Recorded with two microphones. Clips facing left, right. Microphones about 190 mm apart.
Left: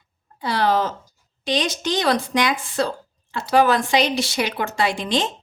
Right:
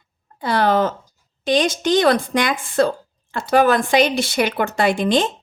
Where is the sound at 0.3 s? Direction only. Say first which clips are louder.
Right 3 dB; 50° right (ahead or behind).